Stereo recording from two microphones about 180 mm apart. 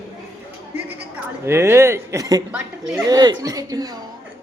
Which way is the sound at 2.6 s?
5° right (ahead or behind).